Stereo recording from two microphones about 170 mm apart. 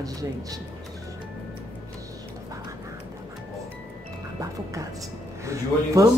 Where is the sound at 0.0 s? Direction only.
20° right (ahead or behind).